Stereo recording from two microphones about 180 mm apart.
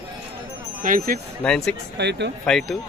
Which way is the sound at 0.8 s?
50° right (ahead or behind).